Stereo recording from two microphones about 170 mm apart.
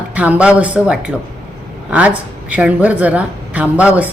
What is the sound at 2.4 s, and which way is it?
A woman's voice, 10° right (ahead or behind).